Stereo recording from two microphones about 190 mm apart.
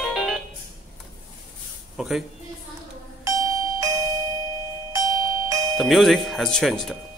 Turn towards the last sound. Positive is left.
turn(degrees=0)  # may be behind; listen again after turning